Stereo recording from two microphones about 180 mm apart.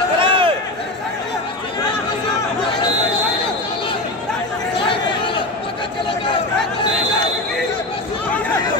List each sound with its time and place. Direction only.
0.2 s run: 30° right (ahead or behind)